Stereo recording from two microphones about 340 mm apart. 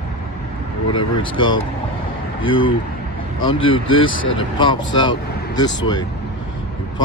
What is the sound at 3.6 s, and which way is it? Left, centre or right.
Speech, left.